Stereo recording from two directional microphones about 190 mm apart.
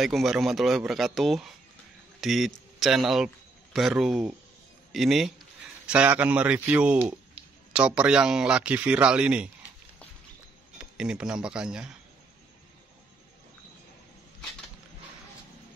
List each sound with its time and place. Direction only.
0.0 s a man's voice: centre (ahead or behind)
10.8 s speech: 5° right (ahead or behind)